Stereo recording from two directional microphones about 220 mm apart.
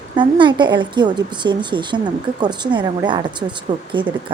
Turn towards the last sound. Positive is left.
turn(degrees=-20)  # may be behind; listen again after turning